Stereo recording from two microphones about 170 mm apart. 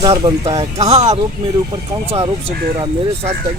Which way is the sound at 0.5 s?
40° right (ahead or behind).